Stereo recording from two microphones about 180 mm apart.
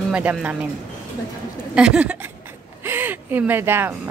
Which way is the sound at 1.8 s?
5° right (ahead or behind).